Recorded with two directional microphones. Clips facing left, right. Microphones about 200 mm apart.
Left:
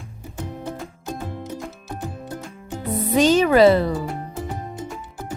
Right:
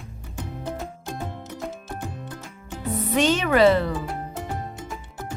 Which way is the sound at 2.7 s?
35° left (ahead or behind).